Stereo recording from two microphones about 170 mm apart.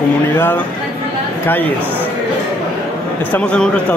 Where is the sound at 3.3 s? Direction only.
10° left (ahead or behind).